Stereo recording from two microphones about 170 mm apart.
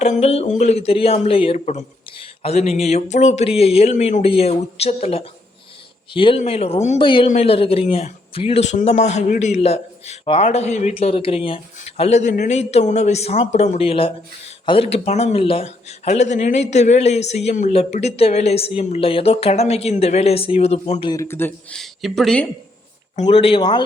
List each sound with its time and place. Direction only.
0.0 s speech: 40° left (ahead or behind)
21.1 s speech: 15° left (ahead or behind)
21.8 s speech: centre (ahead or behind)
23.2 s speech: 35° left (ahead or behind)